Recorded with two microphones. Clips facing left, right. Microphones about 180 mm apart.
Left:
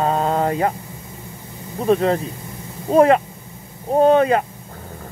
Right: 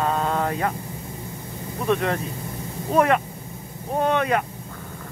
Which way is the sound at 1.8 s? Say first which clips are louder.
Left 6 dB; 30° left (ahead or behind).